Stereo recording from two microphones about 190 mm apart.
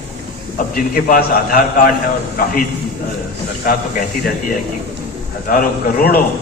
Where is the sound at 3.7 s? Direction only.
50° left (ahead or behind).